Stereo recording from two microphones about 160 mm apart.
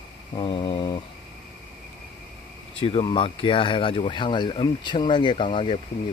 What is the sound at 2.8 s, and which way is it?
Speech, 35° left (ahead or behind).